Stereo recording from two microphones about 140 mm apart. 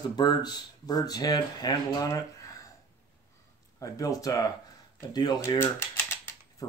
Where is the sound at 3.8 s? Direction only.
25° left (ahead or behind).